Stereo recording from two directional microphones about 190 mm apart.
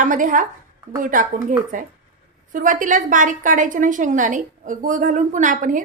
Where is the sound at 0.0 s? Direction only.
45° right (ahead or behind).